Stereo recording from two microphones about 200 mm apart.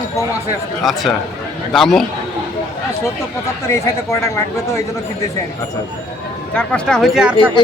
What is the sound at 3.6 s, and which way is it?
Speech, 15° left (ahead or behind).